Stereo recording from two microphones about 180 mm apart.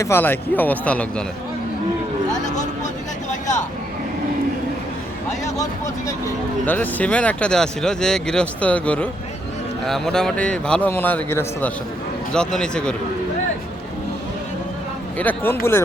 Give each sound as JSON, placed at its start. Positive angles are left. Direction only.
{"t": 0.0, "sound": "speech", "side_deg": 10}
{"t": 2.4, "sound": "a sound", "side_deg": 40}
{"t": 5.5, "sound": "a man's voice", "side_deg": 20}
{"t": 15.2, "sound": "speech", "side_deg": 10}